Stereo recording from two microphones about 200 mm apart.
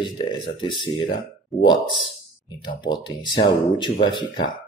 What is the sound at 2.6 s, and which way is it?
Speech, 20° left (ahead or behind).